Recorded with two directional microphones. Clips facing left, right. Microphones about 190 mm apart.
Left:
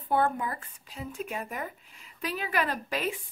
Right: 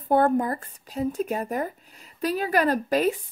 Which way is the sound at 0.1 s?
40° right (ahead or behind).